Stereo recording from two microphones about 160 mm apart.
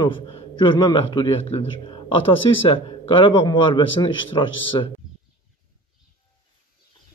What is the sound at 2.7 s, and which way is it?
A man's voice, 35° left (ahead or behind).